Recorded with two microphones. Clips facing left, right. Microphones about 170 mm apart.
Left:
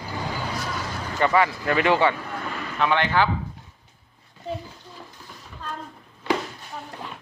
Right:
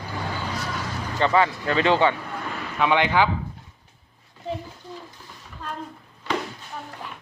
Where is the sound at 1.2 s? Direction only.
25° right (ahead or behind).